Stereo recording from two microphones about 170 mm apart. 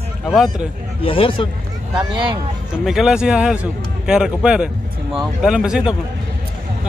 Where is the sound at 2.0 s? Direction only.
30° right (ahead or behind).